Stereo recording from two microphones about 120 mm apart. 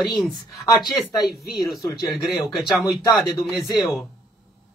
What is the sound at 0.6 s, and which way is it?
Speech, 25° left (ahead or behind).